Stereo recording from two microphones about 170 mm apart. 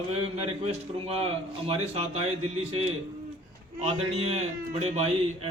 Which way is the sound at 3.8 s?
40° right (ahead or behind).